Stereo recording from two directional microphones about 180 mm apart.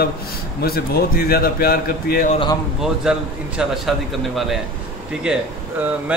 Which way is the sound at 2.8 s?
5° right (ahead or behind).